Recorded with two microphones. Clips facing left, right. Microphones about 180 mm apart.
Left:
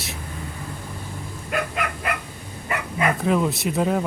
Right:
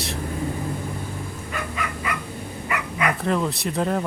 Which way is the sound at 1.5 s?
60° left (ahead or behind).